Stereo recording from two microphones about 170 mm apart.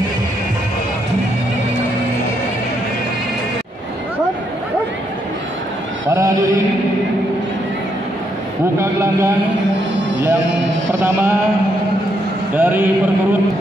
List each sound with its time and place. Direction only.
6.0 s a sound: 20° right (ahead or behind)
8.7 s speech: 15° right (ahead or behind)
10.9 s speech: 15° right (ahead or behind)
12.5 s speech: 10° right (ahead or behind)